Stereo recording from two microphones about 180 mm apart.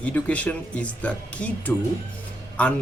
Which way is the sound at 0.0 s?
10° left (ahead or behind).